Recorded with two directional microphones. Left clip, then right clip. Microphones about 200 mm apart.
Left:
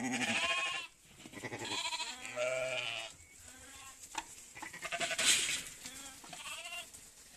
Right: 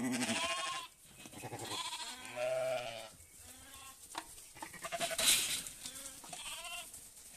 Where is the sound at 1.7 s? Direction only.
30° left (ahead or behind).